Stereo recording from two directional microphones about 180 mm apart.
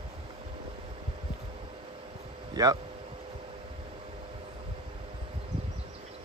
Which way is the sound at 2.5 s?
20° right (ahead or behind).